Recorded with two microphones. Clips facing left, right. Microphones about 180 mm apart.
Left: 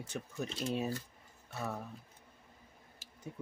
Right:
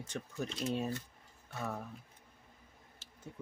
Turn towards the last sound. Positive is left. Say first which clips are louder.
# left 1 dB
turn(degrees=10)  # may be behind; listen again after turning